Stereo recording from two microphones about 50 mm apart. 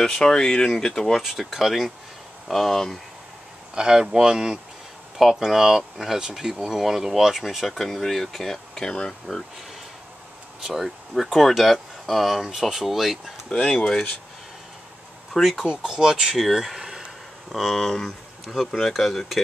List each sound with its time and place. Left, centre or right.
0.0 s speech: centre
1.2 s speech: centre
3.7 s speech: centre
10.6 s speech: centre
13.6 s speech: centre
15.4 s speech: centre
16.3 s a sound: centre
17.6 s speech: centre